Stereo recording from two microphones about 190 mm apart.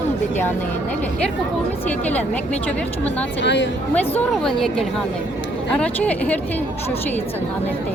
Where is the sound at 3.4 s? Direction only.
70° left (ahead or behind).